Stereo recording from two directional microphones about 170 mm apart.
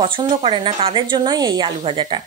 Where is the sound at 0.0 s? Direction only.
30° right (ahead or behind).